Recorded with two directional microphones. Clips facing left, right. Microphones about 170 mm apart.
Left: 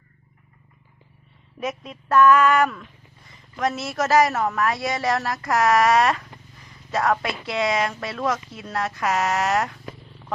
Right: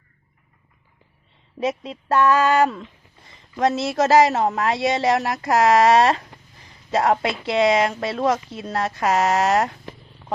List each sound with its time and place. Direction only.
1.5 s speech: 30° right (ahead or behind)